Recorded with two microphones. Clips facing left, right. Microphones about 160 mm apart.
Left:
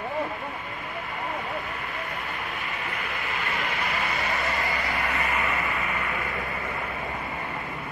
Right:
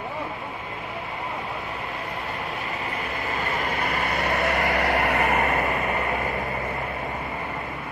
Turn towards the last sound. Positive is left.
turn(degrees=-40)  # may be behind; listen again after turning